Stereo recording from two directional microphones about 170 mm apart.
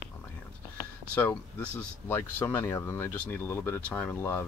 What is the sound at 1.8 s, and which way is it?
Speech, 10° left (ahead or behind).